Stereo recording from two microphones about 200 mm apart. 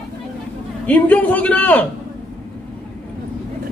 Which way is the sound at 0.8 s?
10° left (ahead or behind).